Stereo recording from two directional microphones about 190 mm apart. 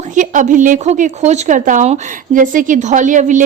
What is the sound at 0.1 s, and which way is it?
Speech, 40° right (ahead or behind).